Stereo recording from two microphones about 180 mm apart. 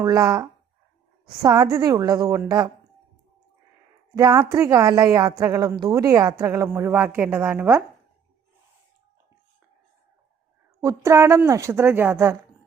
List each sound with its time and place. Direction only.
0.0 s speech: 20° right (ahead or behind)
4.1 s speech: 20° right (ahead or behind)
10.8 s speech: 15° right (ahead or behind)